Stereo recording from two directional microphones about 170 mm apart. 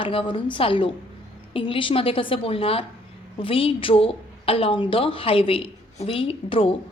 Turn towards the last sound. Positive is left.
turn(degrees=30)  # may be behind; listen again after turning